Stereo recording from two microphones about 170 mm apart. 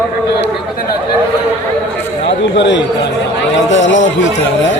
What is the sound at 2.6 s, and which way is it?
A man's voice, 90° left.